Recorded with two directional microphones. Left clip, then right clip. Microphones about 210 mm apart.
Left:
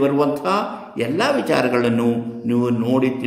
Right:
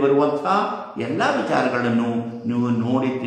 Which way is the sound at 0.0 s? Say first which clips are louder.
Even; 50° left (ahead or behind).